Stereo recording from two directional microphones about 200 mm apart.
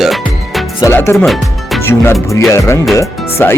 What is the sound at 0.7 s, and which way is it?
Music, 15° left (ahead or behind).